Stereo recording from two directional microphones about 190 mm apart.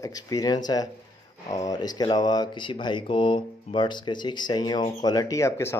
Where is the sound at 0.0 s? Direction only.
20° left (ahead or behind).